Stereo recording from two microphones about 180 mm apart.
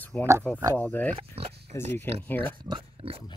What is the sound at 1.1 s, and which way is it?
Pig, 35° right (ahead or behind).